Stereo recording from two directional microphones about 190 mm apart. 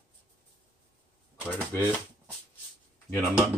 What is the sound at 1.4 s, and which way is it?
Speech, 10° left (ahead or behind).